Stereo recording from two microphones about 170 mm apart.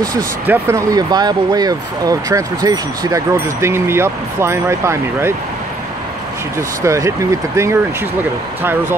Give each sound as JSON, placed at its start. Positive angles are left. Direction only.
{"t": 0.5, "sound": "speech", "side_deg": -15}
{"t": 6.8, "sound": "speech", "side_deg": -15}